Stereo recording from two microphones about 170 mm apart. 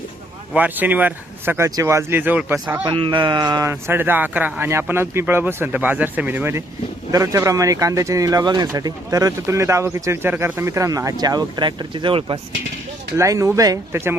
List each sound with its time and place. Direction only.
0.5 s speech: 10° right (ahead or behind)
2.8 s speech: 30° right (ahead or behind)
13.1 s speech: 15° right (ahead or behind)